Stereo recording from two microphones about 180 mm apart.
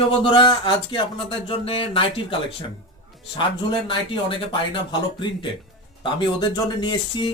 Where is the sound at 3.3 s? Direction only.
30° left (ahead or behind).